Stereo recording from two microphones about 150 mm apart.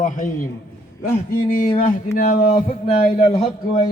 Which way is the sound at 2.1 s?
65° left (ahead or behind).